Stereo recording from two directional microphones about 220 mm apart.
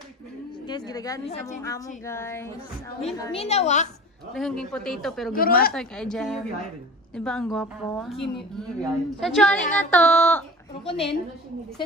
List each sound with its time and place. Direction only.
0.7 s speech: 20° left (ahead or behind)
3.3 s a woman's voice: 30° left (ahead or behind)
4.3 s a woman's voice: centre (ahead or behind)
5.3 s speech: 40° left (ahead or behind)
5.7 s a woman's voice: 5° left (ahead or behind)
10.7 s a woman's voice: 25° left (ahead or behind)